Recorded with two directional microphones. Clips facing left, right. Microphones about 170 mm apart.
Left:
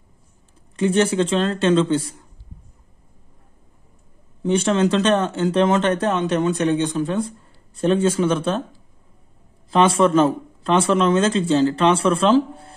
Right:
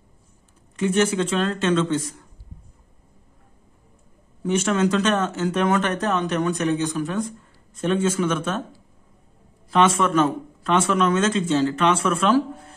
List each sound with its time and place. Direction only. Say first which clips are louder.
0.7 s speech: left 3 dB; 30° left (ahead or behind)
4.4 s speech: left 3 dB; 30° left (ahead or behind)
9.7 s speech: left 3 dB; 30° left (ahead or behind)